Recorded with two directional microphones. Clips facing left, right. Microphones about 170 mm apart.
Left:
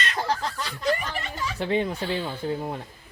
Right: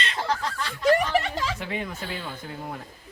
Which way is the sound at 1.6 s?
30° left (ahead or behind).